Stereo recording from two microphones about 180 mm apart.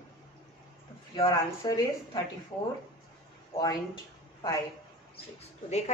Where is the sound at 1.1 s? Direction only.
25° left (ahead or behind).